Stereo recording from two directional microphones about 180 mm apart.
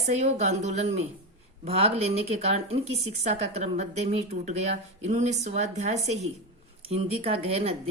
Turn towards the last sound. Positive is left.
turn(degrees=-35)  # may be behind; listen again after turning